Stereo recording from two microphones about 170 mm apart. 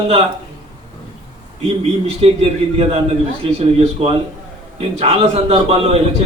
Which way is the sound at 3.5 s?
35° right (ahead or behind).